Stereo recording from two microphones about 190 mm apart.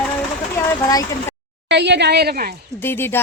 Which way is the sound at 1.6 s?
65° right (ahead or behind).